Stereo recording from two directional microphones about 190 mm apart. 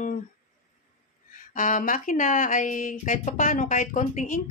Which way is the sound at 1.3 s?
45° left (ahead or behind).